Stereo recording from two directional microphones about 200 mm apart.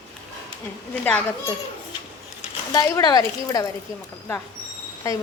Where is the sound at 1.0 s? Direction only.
5° left (ahead or behind).